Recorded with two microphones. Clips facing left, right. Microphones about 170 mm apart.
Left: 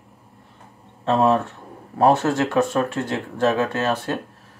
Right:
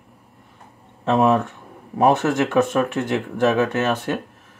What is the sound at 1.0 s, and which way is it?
Speech, 20° right (ahead or behind).